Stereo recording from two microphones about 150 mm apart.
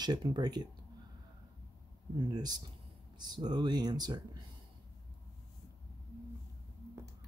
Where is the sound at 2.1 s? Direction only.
30° right (ahead or behind).